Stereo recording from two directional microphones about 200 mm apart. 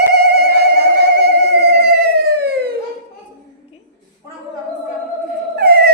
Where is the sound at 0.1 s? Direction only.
55° right (ahead or behind).